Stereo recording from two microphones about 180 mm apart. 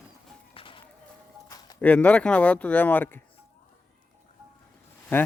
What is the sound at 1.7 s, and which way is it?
Speech, 5° left (ahead or behind).